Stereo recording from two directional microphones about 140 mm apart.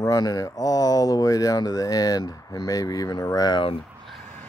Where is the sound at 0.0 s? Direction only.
25° left (ahead or behind).